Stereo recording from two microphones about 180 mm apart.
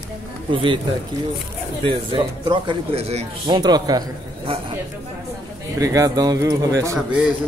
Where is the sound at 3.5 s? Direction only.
25° right (ahead or behind).